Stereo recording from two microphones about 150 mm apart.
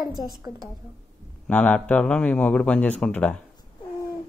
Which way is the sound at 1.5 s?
10° left (ahead or behind).